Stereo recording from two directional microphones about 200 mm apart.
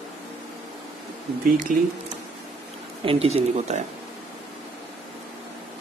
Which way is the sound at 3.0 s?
30° right (ahead or behind).